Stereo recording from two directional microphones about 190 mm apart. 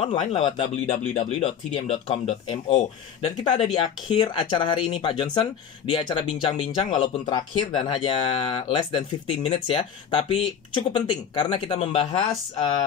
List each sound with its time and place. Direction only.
0.0 s speech: 30° left (ahead or behind)